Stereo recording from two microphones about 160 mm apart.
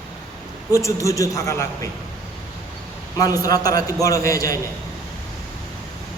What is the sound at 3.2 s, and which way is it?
A man's voice, 20° left (ahead or behind).